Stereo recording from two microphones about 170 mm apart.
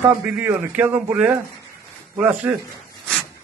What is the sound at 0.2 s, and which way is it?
A man's voice, 10° right (ahead or behind).